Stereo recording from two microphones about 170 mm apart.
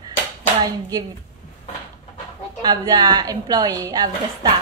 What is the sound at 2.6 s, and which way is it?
A woman's voice, 25° right (ahead or behind).